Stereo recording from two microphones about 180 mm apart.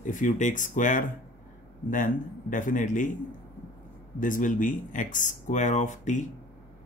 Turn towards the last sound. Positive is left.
turn(degrees=40)  # may be behind; listen again after turning